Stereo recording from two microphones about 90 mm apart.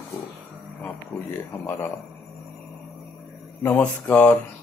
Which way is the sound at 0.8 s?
20° left (ahead or behind).